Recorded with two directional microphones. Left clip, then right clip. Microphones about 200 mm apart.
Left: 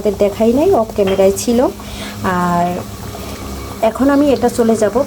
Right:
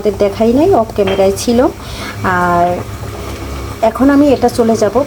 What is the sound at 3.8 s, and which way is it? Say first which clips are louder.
Speech: right 3 dB; 5° left (ahead or behind).